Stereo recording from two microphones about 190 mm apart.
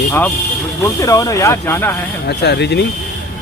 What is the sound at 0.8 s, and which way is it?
Speech, 15° left (ahead or behind).